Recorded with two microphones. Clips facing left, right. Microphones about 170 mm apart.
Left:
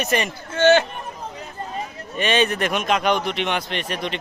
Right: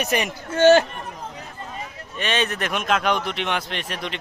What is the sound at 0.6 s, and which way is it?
Speech, 40° right (ahead or behind).